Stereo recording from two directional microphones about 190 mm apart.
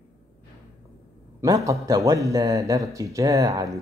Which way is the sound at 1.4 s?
15° right (ahead or behind).